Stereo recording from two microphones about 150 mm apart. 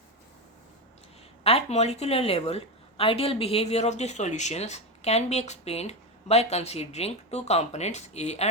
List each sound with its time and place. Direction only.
1.5 s a woman's voice: 45° left (ahead or behind)